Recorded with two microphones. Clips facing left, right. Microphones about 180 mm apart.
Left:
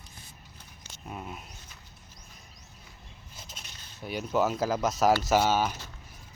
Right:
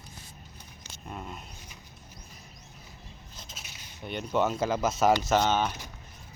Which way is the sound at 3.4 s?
5° left (ahead or behind).